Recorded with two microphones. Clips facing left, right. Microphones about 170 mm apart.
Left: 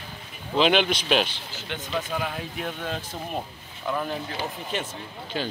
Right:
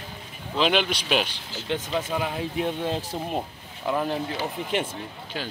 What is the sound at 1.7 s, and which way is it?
A man's voice, 30° right (ahead or behind).